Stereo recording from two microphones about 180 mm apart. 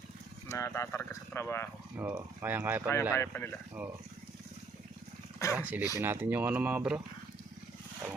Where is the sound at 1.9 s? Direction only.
10° right (ahead or behind).